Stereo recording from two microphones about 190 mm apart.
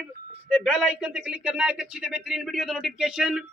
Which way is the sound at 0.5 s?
Centre (ahead or behind).